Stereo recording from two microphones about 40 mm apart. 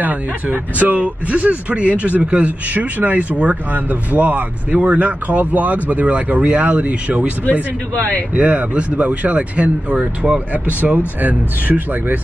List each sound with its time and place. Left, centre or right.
0.0 s speech: right
8.4 s speech: right
9.9 s speech: right
11.0 s speech: right